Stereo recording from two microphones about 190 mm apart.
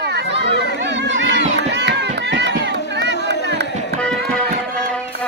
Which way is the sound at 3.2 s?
65° right (ahead or behind).